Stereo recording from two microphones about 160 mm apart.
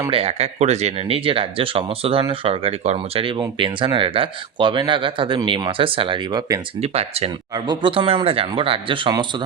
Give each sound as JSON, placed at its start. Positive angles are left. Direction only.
{"t": 0.1, "sound": "speech", "side_deg": -40}
{"t": 6.8, "sound": "speech", "side_deg": -40}
{"t": 7.5, "sound": "speech", "side_deg": -25}